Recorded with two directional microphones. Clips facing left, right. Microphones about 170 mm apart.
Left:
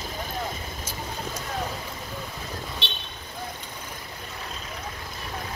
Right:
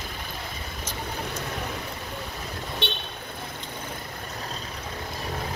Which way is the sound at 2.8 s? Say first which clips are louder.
Right 6 dB; 55° right (ahead or behind).